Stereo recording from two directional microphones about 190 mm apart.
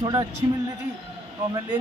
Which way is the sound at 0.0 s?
25° right (ahead or behind).